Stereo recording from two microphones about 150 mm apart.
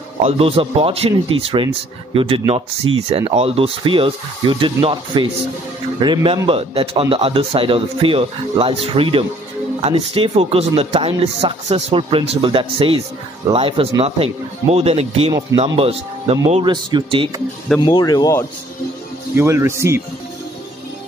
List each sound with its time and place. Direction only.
0.2 s a man's voice: 40° right (ahead or behind)
17.7 s speech: 30° left (ahead or behind)
19.3 s speech: 20° right (ahead or behind)